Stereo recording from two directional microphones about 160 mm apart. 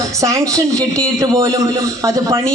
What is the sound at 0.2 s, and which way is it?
A man's voice, 20° right (ahead or behind).